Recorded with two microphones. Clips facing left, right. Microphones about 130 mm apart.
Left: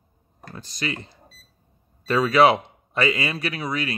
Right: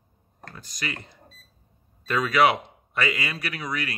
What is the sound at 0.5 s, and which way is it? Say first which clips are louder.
A man's voice: left 5 dB; 30° left (ahead or behind).